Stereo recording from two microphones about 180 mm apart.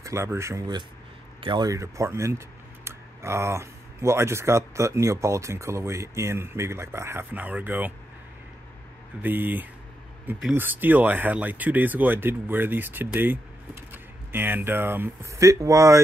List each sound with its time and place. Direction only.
0.0 s speech: 15° right (ahead or behind)
9.2 s speech: 10° right (ahead or behind)